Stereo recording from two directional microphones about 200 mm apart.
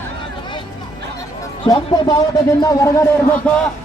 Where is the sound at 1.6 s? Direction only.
20° left (ahead or behind).